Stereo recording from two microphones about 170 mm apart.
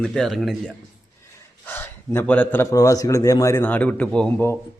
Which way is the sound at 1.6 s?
10° left (ahead or behind).